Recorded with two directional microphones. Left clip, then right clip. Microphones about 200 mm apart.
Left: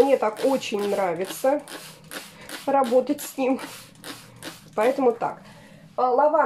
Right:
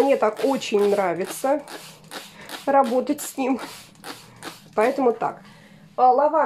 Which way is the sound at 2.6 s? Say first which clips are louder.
Right 1 dB; 30° right (ahead or behind).